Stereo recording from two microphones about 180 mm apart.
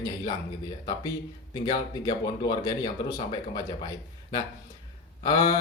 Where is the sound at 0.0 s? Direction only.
20° left (ahead or behind).